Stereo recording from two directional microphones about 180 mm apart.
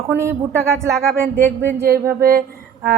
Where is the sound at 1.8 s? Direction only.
60° right (ahead or behind).